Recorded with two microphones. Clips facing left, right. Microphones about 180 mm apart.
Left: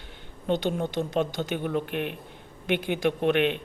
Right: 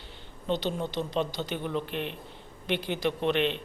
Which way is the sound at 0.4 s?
50° left (ahead or behind).